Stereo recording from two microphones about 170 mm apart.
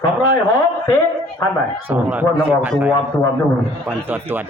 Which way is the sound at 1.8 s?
10° right (ahead or behind).